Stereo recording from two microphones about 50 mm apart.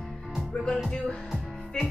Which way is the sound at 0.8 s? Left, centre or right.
Centre.